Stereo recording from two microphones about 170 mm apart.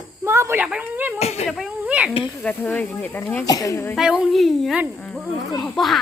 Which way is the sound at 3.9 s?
5° right (ahead or behind).